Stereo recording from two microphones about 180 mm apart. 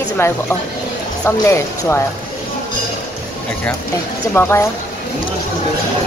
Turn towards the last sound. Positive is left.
turn(degrees=10)  # may be behind; listen again after turning